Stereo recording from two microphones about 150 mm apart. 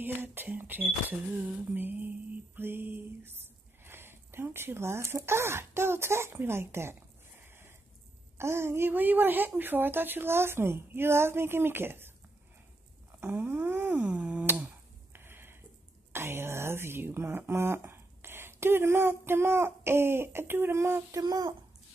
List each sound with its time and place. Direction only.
0.0 s speech: 15° right (ahead or behind)
13.2 s a sound: 15° right (ahead or behind)
16.1 s speech: 15° right (ahead or behind)